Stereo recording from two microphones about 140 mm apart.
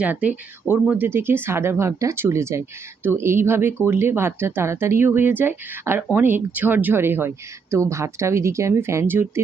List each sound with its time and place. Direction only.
0.0 s speech: 10° right (ahead or behind)